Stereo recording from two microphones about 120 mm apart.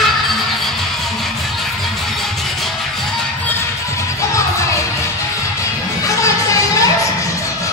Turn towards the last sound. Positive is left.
turn(degrees=25)  # may be behind; listen again after turning